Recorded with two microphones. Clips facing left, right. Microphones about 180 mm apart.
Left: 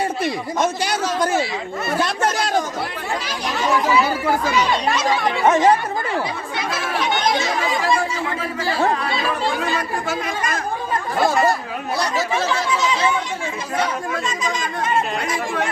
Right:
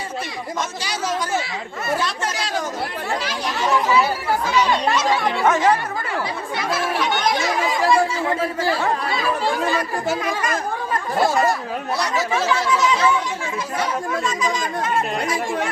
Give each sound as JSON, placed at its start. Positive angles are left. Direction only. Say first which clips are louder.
{"t": 0.6, "sound": "speech", "louder": "left 7 dB", "side_deg": 55}
{"t": 5.5, "sound": "speech", "louder": "left 3 dB", "side_deg": 25}
{"t": 12.5, "sound": "speech", "louder": "right 2 dB", "side_deg": 30}